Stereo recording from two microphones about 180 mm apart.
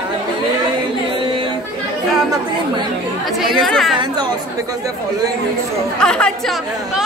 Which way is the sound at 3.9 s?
25° right (ahead or behind).